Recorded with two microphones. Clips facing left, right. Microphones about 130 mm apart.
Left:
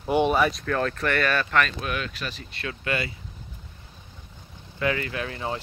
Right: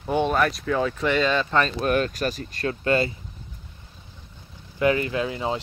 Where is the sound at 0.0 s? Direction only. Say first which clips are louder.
Left 1 dB; 10° left (ahead or behind); by 1.9 s 30° right (ahead or behind).